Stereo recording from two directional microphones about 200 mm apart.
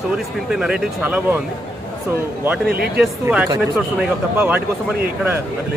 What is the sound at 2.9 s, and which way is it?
Speech, 5° right (ahead or behind).